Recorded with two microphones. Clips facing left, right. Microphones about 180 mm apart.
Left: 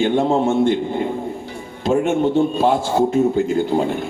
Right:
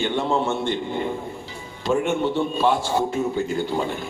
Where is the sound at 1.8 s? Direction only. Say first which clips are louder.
Left 5 dB; 50° left (ahead or behind).